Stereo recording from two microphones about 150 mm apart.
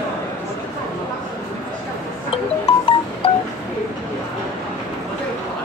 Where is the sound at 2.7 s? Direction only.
40° left (ahead or behind).